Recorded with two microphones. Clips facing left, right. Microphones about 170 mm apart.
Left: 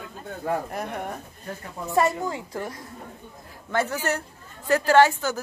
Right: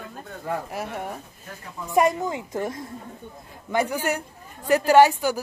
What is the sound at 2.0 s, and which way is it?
A woman's voice, 15° right (ahead or behind).